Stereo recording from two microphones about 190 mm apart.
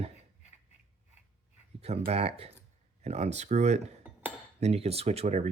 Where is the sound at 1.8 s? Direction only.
35° right (ahead or behind).